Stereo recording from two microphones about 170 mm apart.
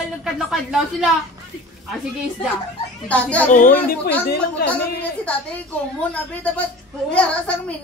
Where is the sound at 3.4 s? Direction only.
50° left (ahead or behind).